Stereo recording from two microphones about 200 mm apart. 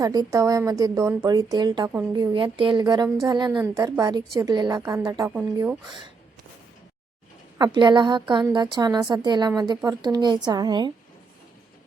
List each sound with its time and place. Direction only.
0.0 s a woman's voice: 15° right (ahead or behind)
7.6 s a woman's voice: 25° right (ahead or behind)